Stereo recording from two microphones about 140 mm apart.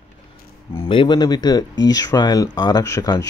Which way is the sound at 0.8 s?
35° left (ahead or behind).